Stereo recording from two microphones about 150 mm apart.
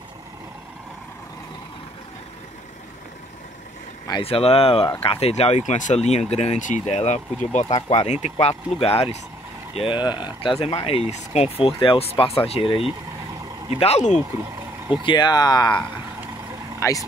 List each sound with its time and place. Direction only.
4.2 s speech: 40° left (ahead or behind)
13.7 s speech: 45° left (ahead or behind)
15.0 s speech: 30° left (ahead or behind)